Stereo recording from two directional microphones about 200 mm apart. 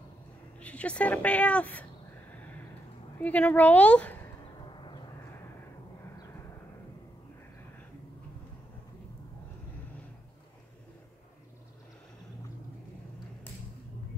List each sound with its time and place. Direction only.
0.6 s a woman's voice: 5° left (ahead or behind)
2.3 s a sound: 10° left (ahead or behind)
3.2 s a woman's voice: 10° left (ahead or behind)
4.7 s vehicle: 25° left (ahead or behind)